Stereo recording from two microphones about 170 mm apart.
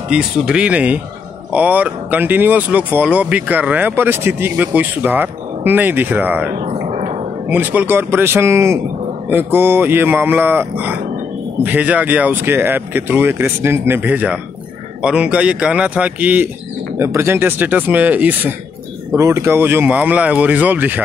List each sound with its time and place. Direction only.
0.1 s speech: 5° right (ahead or behind)
6.9 s a sound: 40° right (ahead or behind)
7.4 s speech: 10° right (ahead or behind)